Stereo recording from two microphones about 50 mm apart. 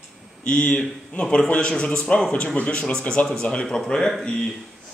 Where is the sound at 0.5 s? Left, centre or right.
Left.